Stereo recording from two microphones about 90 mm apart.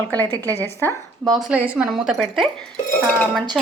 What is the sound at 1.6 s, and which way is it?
Speech, 15° right (ahead or behind).